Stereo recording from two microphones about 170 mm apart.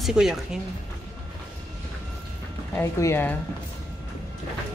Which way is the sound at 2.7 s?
15° left (ahead or behind).